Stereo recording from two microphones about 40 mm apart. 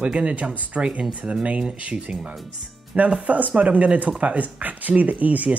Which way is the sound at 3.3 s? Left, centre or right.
Right.